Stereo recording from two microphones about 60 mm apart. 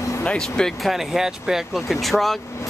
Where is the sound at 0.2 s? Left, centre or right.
Centre.